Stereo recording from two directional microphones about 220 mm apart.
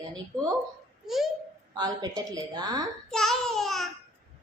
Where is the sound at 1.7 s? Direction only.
20° right (ahead or behind).